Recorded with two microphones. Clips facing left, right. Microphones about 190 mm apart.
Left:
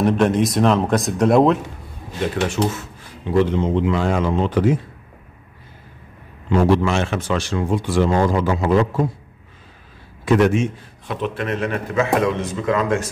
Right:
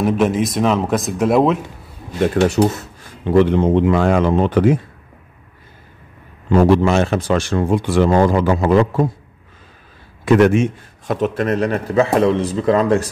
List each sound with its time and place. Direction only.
0.0 s speech: 5° right (ahead or behind)
2.2 s a man's voice: 40° right (ahead or behind)
3.3 s a man's voice: 60° right (ahead or behind)
6.5 s a man's voice: 40° right (ahead or behind)
7.3 s a man's voice: 55° right (ahead or behind)
10.2 s a man's voice: 60° right (ahead or behind); by 13.1 s 35° right (ahead or behind)